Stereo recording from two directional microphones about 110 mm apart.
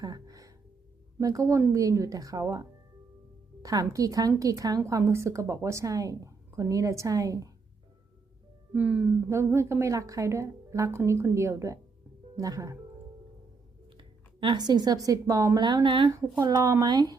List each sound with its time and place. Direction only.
0.0 s gasp: 35° right (ahead or behind)
1.2 s a woman's voice: 30° right (ahead or behind)
8.7 s speech: 15° right (ahead or behind)
9.3 s a woman's voice: 25° right (ahead or behind)
14.4 s a woman's voice: 40° right (ahead or behind)
16.4 s a woman's voice: 35° right (ahead or behind)